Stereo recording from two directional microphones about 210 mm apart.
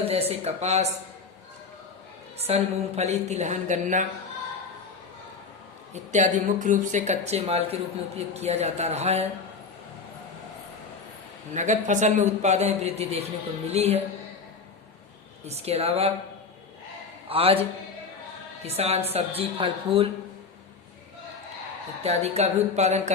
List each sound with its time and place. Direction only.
0.0 s speech: 30° right (ahead or behind)
2.4 s speech: 30° right (ahead or behind)
5.9 s speech: 35° right (ahead or behind)
11.5 s speech: 35° right (ahead or behind)
15.4 s speech: 30° right (ahead or behind)
17.2 s a man's voice: 25° right (ahead or behind)
22.0 s speech: 30° right (ahead or behind)